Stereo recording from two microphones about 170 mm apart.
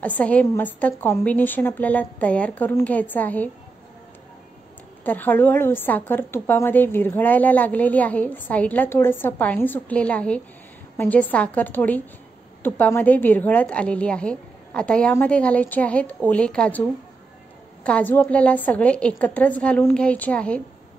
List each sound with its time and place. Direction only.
0.0 s a woman's voice: 10° left (ahead or behind)
5.0 s a woman's voice: 10° left (ahead or behind)
17.8 s a woman's voice: 10° left (ahead or behind)